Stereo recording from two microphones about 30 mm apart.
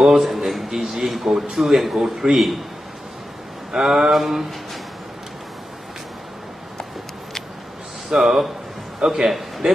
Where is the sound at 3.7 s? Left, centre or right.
Centre.